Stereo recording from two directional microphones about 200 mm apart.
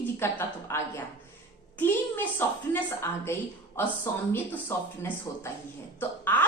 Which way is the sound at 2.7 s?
15° left (ahead or behind).